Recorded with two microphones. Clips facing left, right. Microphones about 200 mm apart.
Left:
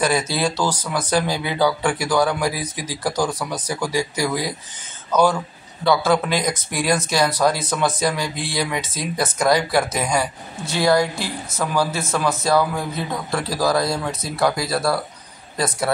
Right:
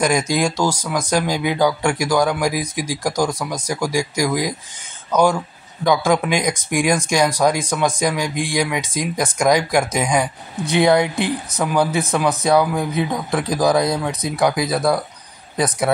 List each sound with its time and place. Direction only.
0.0 s speech: 15° right (ahead or behind)